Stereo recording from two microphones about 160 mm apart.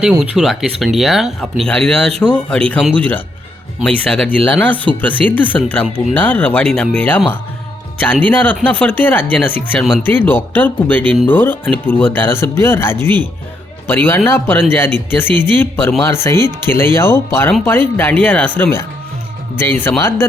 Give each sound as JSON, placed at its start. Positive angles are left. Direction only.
{"t": 0.0, "sound": "speech", "side_deg": -5}
{"t": 9.7, "sound": "speech", "side_deg": 0}
{"t": 10.0, "sound": "speech", "side_deg": 15}